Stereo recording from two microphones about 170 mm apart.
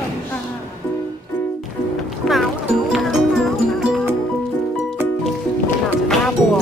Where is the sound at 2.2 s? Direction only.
5° left (ahead or behind).